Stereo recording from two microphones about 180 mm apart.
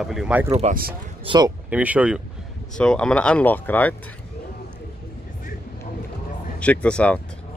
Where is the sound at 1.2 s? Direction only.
25° right (ahead or behind).